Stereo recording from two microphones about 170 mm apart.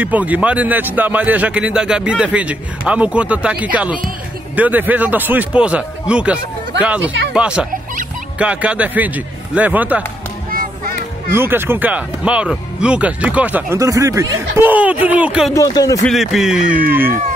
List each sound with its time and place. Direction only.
0.0 s a man's voice: 10° right (ahead or behind)
11.3 s speech: 15° right (ahead or behind)
15.5 s speech: 20° left (ahead or behind)
16.1 s a man's voice: centre (ahead or behind)